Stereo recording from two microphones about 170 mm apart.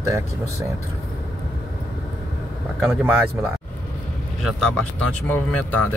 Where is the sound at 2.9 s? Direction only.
10° right (ahead or behind).